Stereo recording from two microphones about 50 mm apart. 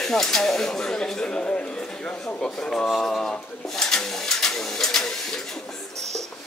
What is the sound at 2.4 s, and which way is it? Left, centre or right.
Speech, centre.